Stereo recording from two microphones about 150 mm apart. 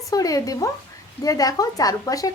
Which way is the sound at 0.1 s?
25° left (ahead or behind).